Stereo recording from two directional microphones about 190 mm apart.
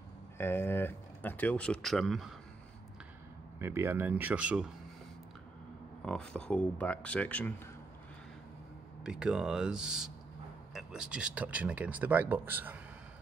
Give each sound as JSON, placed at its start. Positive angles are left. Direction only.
{"t": 0.4, "sound": "speech", "side_deg": 10}
{"t": 3.5, "sound": "speech", "side_deg": -15}
{"t": 6.0, "sound": "speech", "side_deg": 5}
{"t": 9.0, "sound": "speech", "side_deg": -5}